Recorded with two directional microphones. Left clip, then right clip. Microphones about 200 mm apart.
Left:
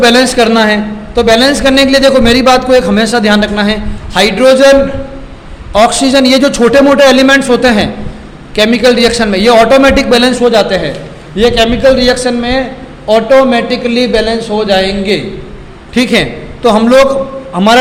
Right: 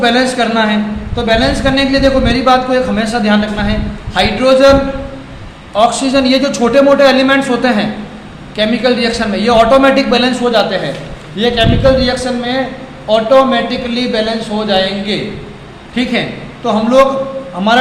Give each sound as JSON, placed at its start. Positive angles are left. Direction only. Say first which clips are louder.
{"t": 0.0, "sound": "a woman's voice", "louder": "left 5 dB", "side_deg": 45}
{"t": 5.7, "sound": "a man's voice", "louder": "left 4 dB", "side_deg": 40}
{"t": 16.6, "sound": "a woman's voice", "louder": "left 4 dB", "side_deg": 50}